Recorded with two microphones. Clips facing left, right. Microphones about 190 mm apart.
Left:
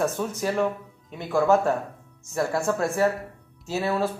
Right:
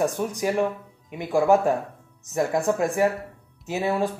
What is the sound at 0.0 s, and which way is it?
Speech, 15° right (ahead or behind).